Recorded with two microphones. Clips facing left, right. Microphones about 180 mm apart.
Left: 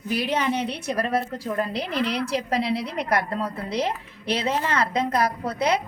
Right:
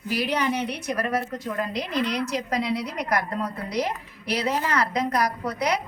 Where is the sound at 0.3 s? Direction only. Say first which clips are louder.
Left 1 dB; 30° left (ahead or behind).